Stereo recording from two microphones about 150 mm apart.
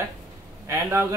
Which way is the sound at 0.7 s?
20° right (ahead or behind).